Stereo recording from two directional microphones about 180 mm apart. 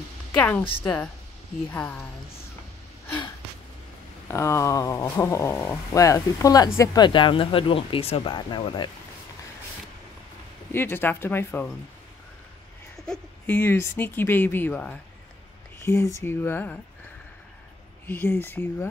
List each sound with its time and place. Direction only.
0.4 s speech: 10° left (ahead or behind)
4.3 s speech: 15° left (ahead or behind)
10.7 s speech: 10° left (ahead or behind)
13.0 s speech: 5° left (ahead or behind)
18.0 s speech: 10° left (ahead or behind)